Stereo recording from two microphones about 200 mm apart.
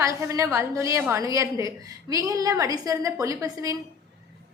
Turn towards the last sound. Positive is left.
turn(degrees=-15)  # may be behind; listen again after turning